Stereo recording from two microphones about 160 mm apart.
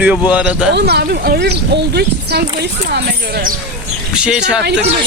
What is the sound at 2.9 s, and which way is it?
Speech, 80° right.